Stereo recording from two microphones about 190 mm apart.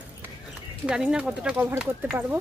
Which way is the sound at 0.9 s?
5° right (ahead or behind).